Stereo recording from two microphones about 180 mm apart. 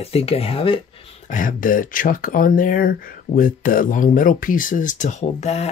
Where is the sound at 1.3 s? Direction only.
50° left (ahead or behind).